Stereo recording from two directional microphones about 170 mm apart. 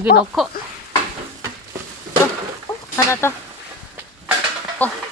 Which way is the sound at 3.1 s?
15° left (ahead or behind).